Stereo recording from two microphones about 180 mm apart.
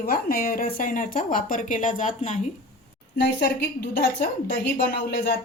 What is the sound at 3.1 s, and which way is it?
A woman's voice, 65° left (ahead or behind).